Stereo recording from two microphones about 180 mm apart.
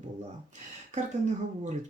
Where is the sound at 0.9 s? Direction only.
40° right (ahead or behind).